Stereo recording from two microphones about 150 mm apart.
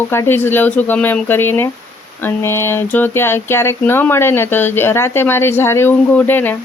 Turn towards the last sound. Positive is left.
turn(degrees=15)  # may be behind; listen again after turning